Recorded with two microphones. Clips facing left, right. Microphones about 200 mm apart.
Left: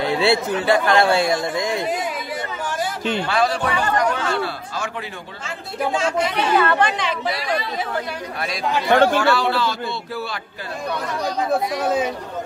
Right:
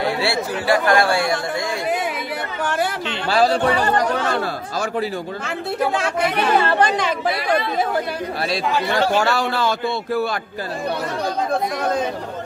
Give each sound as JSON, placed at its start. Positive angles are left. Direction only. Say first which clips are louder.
{"t": 0.0, "sound": "a man's voice", "louder": "left 3 dB", "side_deg": 20}
{"t": 2.6, "sound": "a sound", "louder": "right 5 dB", "side_deg": -65}
{"t": 3.3, "sound": "a sound", "louder": "right 7 dB", "side_deg": -35}
{"t": 5.9, "sound": "speech", "louder": "even", "side_deg": -60}
{"t": 6.6, "sound": "speech", "louder": "right 1 dB", "side_deg": -35}
{"t": 8.8, "sound": "speech", "louder": "left 6 dB", "side_deg": 55}
{"t": 9.2, "sound": "speech", "louder": "left 1 dB", "side_deg": -45}
{"t": 11.8, "sound": "speech", "louder": "left 1 dB", "side_deg": 5}